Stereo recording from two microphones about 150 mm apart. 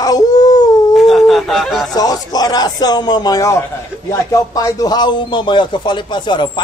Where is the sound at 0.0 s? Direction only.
25° left (ahead or behind).